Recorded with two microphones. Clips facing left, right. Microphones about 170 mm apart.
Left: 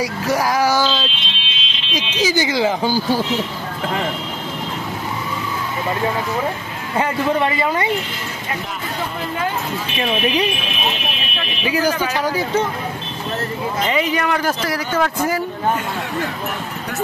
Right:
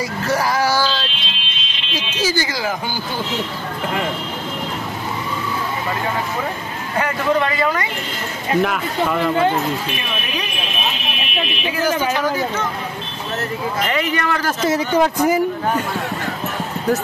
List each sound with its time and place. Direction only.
0.0 s child singing: 10° left (ahead or behind)
2.0 s speech: 15° left (ahead or behind); by 3.2 s 35° left (ahead or behind)
7.0 s speech: 25° left (ahead or behind)
8.6 s speech: 75° right (ahead or behind)
12.2 s speech: 10° left (ahead or behind)
13.8 s speech: 15° left (ahead or behind)
14.6 s speech: 20° right (ahead or behind)